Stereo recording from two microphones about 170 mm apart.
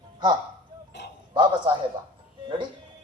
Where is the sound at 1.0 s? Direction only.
75° left (ahead or behind).